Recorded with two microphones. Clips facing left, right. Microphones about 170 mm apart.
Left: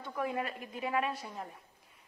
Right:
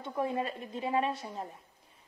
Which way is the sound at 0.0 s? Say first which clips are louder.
Right 3 dB; 25° right (ahead or behind).